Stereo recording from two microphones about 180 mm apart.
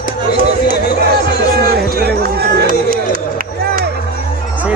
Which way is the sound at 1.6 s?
60° right (ahead or behind).